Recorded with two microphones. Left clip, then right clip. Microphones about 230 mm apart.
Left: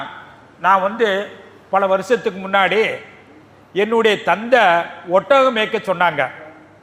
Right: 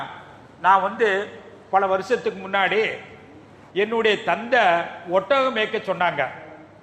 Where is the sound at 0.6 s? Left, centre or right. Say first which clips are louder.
Left 3 dB; left.